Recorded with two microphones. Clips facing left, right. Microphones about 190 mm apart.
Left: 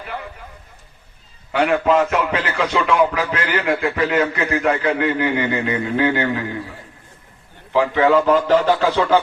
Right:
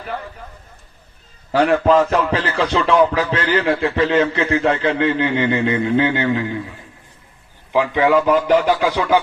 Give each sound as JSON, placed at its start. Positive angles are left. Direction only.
{"t": 1.5, "sound": "music", "side_deg": -35}
{"t": 4.6, "sound": "speech", "side_deg": -25}
{"t": 7.7, "sound": "speech", "side_deg": -20}